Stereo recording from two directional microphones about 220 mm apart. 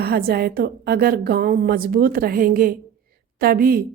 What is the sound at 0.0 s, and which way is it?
A woman's voice, 45° right (ahead or behind).